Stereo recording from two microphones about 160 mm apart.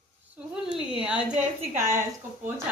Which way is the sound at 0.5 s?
5° right (ahead or behind).